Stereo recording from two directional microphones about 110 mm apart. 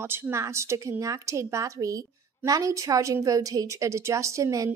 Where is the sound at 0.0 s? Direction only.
20° right (ahead or behind).